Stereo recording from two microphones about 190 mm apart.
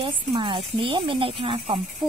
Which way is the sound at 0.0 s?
25° right (ahead or behind).